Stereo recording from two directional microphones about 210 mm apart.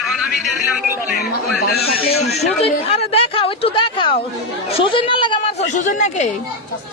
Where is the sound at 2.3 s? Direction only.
30° left (ahead or behind).